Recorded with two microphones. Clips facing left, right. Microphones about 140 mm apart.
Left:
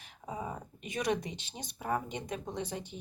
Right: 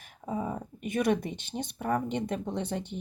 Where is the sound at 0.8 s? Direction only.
55° right (ahead or behind).